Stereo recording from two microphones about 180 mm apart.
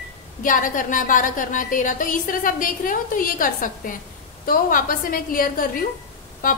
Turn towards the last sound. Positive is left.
turn(degrees=50)  # may be behind; listen again after turning